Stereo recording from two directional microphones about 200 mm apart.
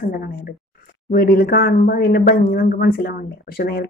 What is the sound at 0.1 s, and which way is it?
Speech, 50° left (ahead or behind).